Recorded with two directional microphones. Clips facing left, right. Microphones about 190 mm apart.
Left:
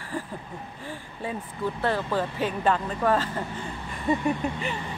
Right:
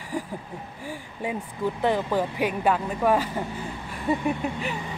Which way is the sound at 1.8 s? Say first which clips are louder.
Right 3 dB; 15° right (ahead or behind).